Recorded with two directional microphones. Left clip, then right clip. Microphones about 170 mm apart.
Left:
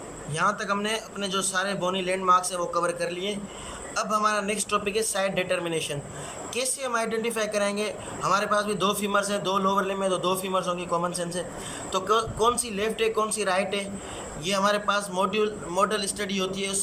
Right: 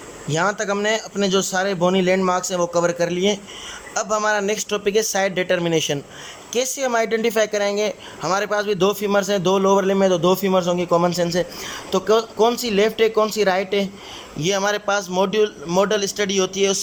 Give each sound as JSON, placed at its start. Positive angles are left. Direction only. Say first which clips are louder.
{"t": 0.3, "sound": "a man's voice", "louder": "right 5 dB", "side_deg": -40}